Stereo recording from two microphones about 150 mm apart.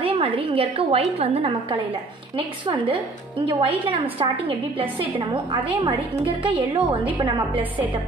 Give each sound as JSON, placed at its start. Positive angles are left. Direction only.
{"t": 0.0, "sound": "a woman's voice", "side_deg": -35}